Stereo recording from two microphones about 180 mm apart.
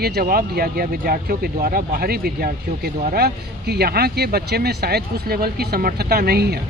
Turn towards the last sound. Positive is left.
turn(degrees=-60)  # may be behind; listen again after turning